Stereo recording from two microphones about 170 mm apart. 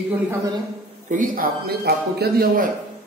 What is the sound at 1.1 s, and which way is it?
A man's voice, 55° right (ahead or behind).